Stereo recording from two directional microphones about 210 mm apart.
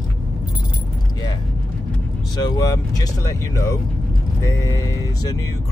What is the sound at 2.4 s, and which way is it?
Speech, 15° left (ahead or behind).